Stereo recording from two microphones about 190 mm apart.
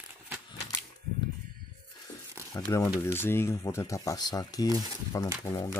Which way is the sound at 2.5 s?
15° left (ahead or behind).